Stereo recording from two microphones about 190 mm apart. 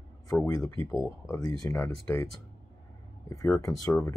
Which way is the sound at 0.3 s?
20° left (ahead or behind).